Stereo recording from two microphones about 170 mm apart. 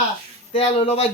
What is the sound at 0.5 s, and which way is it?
Speech, 35° left (ahead or behind).